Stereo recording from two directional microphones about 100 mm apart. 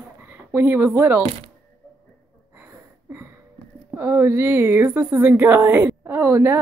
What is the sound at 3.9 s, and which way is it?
A woman's voice, 20° right (ahead or behind).